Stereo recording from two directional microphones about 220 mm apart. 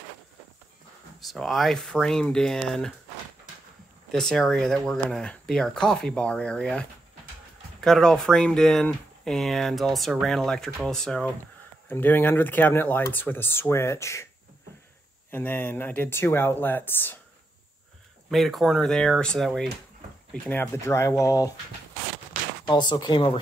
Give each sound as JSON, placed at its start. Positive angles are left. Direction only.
{"t": 1.3, "sound": "speech", "side_deg": 0}
{"t": 4.1, "sound": "speech", "side_deg": 0}
{"t": 15.3, "sound": "speech", "side_deg": 10}
{"t": 18.3, "sound": "speech", "side_deg": 0}
{"t": 22.7, "sound": "speech", "side_deg": 20}